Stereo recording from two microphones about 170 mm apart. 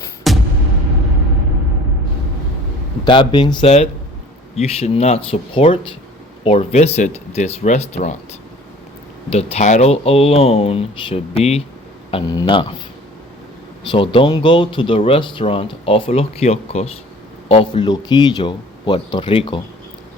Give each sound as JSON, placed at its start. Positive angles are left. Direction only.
{"t": 0.3, "sound": "music", "side_deg": 0}
{"t": 3.0, "sound": "speech", "side_deg": 30}
{"t": 9.3, "sound": "speech", "side_deg": 40}
{"t": 12.1, "sound": "speech", "side_deg": 25}
{"t": 13.9, "sound": "speech", "side_deg": 30}